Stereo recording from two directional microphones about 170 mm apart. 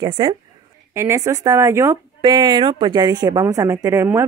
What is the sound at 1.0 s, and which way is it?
Speech, 15° right (ahead or behind).